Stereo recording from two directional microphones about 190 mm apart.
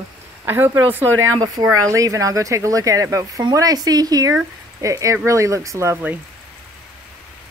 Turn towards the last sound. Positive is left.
turn(degrees=-10)  # may be behind; listen again after turning